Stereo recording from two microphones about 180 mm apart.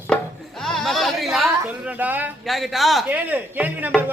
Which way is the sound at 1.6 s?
10° right (ahead or behind).